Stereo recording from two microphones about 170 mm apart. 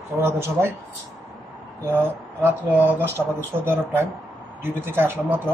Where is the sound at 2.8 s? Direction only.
10° right (ahead or behind).